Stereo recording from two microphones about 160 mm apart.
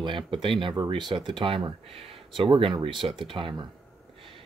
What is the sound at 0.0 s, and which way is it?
Speech, 30° right (ahead or behind).